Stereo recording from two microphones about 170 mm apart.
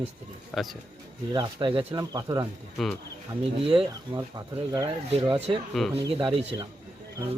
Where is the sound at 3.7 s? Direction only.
20° right (ahead or behind).